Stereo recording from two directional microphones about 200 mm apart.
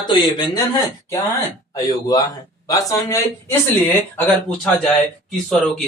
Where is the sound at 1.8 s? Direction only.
20° left (ahead or behind).